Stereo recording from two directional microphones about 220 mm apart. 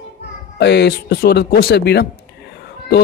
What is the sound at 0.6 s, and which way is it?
A man's voice, 50° left (ahead or behind).